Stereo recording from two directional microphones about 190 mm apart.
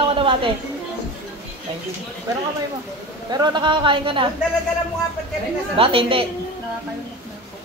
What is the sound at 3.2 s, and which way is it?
A woman's voice, 20° right (ahead or behind).